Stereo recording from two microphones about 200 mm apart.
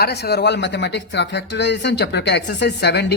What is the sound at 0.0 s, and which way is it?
Speech, 55° left (ahead or behind).